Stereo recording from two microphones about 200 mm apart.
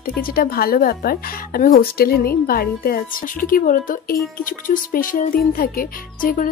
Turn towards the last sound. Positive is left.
turn(degrees=45)  # may be behind; listen again after turning